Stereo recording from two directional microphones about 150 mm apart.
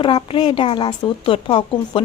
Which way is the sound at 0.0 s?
35° left (ahead or behind).